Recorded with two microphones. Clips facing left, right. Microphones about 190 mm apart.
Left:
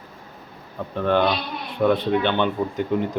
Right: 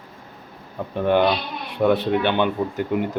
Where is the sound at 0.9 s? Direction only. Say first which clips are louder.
Right 2 dB; 15° right (ahead or behind).